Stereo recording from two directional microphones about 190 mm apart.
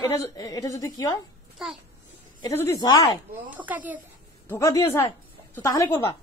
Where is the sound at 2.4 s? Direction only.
15° left (ahead or behind).